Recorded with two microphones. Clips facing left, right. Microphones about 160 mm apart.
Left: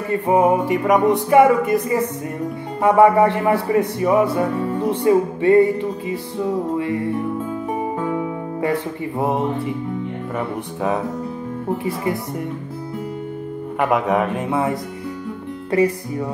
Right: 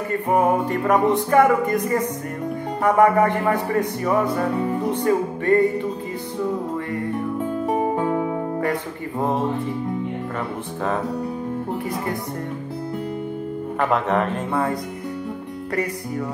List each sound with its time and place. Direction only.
0.1 s music: 15° left (ahead or behind)
4.6 s music: 15° right (ahead or behind)
5.0 s music: 15° left (ahead or behind)
13.7 s music: 10° left (ahead or behind)